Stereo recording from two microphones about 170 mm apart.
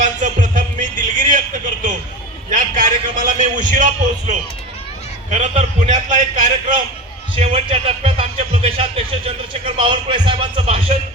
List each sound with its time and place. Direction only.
0.0 s a sound: 45° right (ahead or behind)
2.5 s a man's voice: 50° right (ahead or behind)
7.3 s speech: 35° right (ahead or behind)